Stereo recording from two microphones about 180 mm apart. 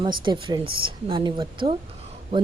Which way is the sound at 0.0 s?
25° right (ahead or behind).